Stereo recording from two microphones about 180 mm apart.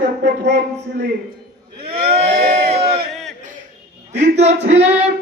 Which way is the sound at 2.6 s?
35° right (ahead or behind).